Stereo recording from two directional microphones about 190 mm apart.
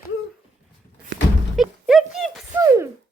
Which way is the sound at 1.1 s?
70° right (ahead or behind).